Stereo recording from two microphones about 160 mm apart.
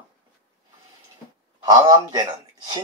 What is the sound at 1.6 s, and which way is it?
A man's voice, 25° right (ahead or behind).